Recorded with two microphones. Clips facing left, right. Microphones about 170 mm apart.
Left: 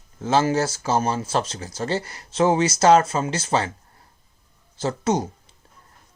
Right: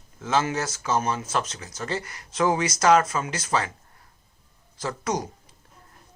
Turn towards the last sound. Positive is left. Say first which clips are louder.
# left 5 dB
turn(degrees=25)  # may be behind; listen again after turning